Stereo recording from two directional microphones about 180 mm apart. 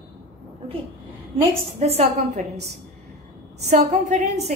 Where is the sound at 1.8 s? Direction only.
35° right (ahead or behind).